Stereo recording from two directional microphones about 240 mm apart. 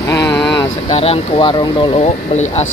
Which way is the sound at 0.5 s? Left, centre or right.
Left.